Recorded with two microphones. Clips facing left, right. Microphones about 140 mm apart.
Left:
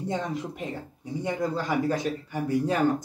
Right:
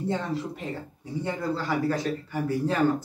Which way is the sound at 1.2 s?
15° left (ahead or behind).